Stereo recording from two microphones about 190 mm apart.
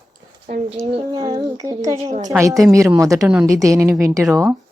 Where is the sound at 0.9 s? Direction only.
25° right (ahead or behind).